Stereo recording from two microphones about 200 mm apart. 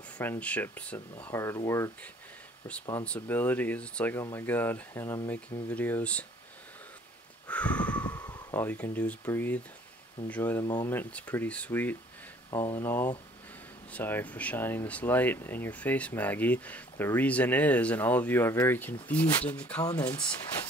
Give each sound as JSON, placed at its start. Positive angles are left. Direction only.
{"t": 0.2, "sound": "speech", "side_deg": 10}
{"t": 3.1, "sound": "speech", "side_deg": 10}
{"t": 7.4, "sound": "a sound", "side_deg": 5}
{"t": 8.1, "sound": "speech", "side_deg": 15}